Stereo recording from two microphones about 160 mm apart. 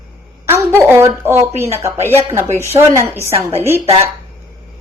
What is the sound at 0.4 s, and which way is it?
A woman's voice, 15° right (ahead or behind).